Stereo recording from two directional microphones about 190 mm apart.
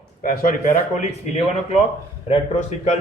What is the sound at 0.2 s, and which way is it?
Speech, 45° left (ahead or behind).